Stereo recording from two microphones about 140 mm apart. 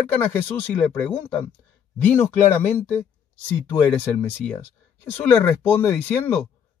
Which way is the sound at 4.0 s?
15° left (ahead or behind).